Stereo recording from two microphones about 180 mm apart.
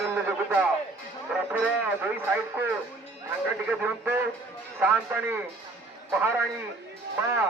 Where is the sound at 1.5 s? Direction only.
10° right (ahead or behind).